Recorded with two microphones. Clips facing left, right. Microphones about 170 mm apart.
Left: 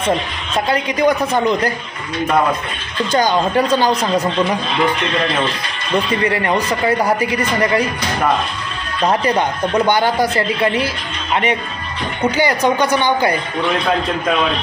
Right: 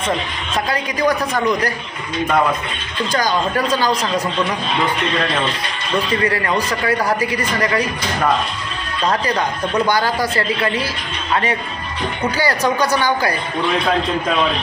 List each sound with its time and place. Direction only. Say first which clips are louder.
0.7 s a man's voice: left 4 dB; 25° left (ahead or behind)
3.1 s a man's voice: left 4 dB; 25° left (ahead or behind)
6.2 s a man's voice: left 2 dB; 20° left (ahead or behind)
9.0 s a man's voice: left 3 dB; 25° left (ahead or behind)
12.4 s a man's voice: left 2 dB; 20° left (ahead or behind)